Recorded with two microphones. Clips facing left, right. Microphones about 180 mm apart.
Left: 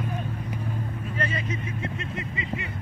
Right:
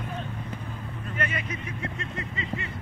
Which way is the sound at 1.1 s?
30° left (ahead or behind).